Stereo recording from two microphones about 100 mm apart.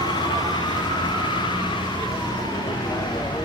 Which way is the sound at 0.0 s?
45° left (ahead or behind).